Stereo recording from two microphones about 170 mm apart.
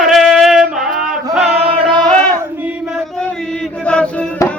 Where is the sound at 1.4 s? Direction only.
35° right (ahead or behind).